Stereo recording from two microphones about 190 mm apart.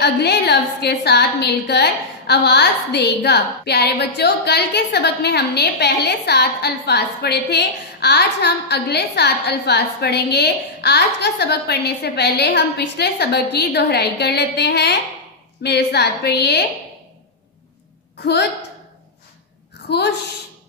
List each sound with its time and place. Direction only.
0.0 s a woman's voice: 60° left (ahead or behind)
19.9 s a woman's voice: 65° left (ahead or behind)